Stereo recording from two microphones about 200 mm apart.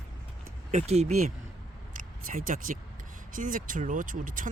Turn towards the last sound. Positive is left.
turn(degrees=-40)  # may be behind; listen again after turning